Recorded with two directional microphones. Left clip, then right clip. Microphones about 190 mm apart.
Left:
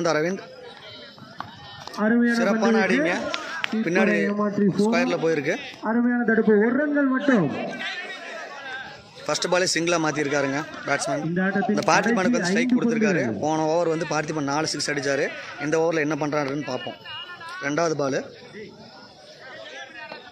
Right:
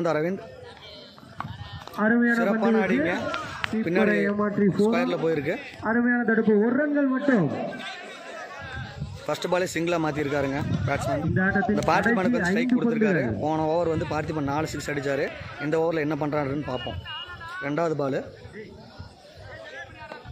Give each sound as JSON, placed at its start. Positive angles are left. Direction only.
{"t": 0.0, "sound": "speech", "side_deg": -5}
{"t": 2.0, "sound": "speech", "side_deg": -30}
{"t": 2.6, "sound": "speech", "side_deg": -5}
{"t": 4.2, "sound": "a man's voice", "side_deg": 50}
{"t": 4.9, "sound": "speech", "side_deg": 0}
{"t": 5.9, "sound": "speech", "side_deg": 50}
{"t": 6.5, "sound": "a man's voice", "side_deg": 20}
{"t": 6.9, "sound": "a man's voice", "side_deg": -10}
{"t": 7.2, "sound": "speech", "side_deg": -25}
{"t": 9.2, "sound": "speech", "side_deg": -5}
{"t": 11.3, "sound": "speech", "side_deg": -25}
{"t": 11.7, "sound": "a man's voice", "side_deg": -5}
{"t": 16.6, "sound": "a sound", "side_deg": 10}
{"t": 17.6, "sound": "speech", "side_deg": -5}